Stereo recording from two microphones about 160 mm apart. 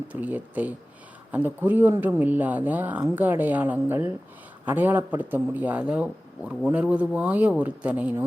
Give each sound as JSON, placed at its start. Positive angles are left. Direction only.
{"t": 0.1, "sound": "speech", "side_deg": -10}